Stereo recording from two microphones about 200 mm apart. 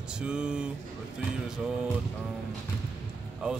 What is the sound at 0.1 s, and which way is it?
Speech, 5° right (ahead or behind).